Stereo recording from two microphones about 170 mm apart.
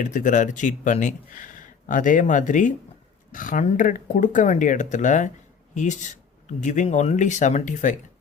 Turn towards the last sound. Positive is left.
turn(degrees=50)  # may be behind; listen again after turning